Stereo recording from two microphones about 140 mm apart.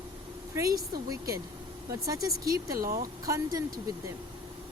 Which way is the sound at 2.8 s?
90° right.